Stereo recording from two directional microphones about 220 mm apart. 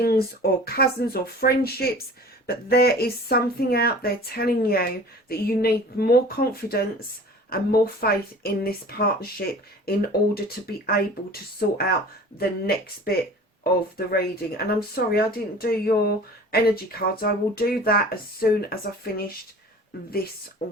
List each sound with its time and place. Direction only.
0.0 s speech: 45° left (ahead or behind)
20.6 s speech: 45° left (ahead or behind)